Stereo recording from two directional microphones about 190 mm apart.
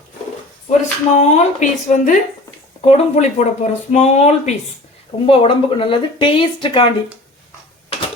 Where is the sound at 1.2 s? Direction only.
40° left (ahead or behind).